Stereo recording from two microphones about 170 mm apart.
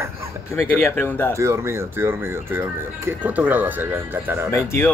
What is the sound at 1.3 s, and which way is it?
Speech, 15° right (ahead or behind).